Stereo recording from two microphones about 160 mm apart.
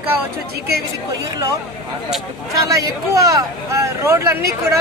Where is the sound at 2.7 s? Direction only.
20° right (ahead or behind).